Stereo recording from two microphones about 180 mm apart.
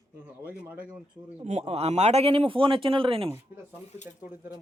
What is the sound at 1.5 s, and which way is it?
A man's voice, 35° right (ahead or behind).